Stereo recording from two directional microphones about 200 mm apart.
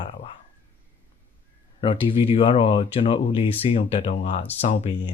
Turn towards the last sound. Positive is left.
turn(degrees=35)  # may be behind; listen again after turning